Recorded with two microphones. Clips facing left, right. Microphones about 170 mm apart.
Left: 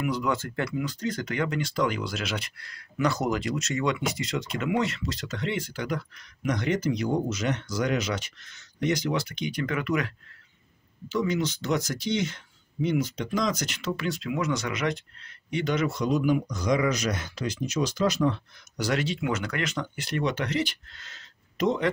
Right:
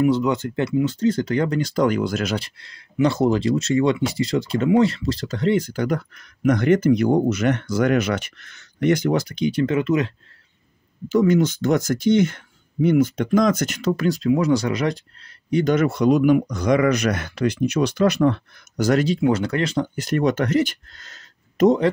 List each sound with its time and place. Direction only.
0.0 s speech: 25° right (ahead or behind); by 2.3 s 45° right (ahead or behind)
2.3 s speech: 30° right (ahead or behind)
11.1 s speech: 50° right (ahead or behind)